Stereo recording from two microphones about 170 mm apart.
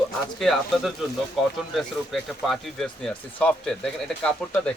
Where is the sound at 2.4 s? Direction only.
Centre (ahead or behind).